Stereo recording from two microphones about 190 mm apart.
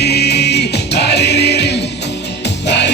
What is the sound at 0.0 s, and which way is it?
Music, 60° left (ahead or behind).